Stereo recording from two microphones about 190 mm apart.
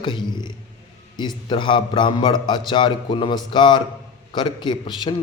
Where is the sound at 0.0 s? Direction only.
25° left (ahead or behind).